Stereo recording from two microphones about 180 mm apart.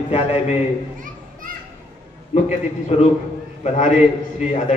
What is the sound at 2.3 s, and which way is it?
A man's voice, 40° left (ahead or behind).